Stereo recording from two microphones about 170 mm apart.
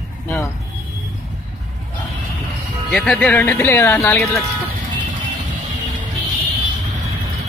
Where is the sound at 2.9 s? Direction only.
5° left (ahead or behind).